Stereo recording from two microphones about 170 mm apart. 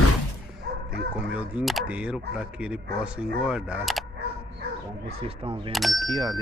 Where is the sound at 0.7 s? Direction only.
70° right (ahead or behind).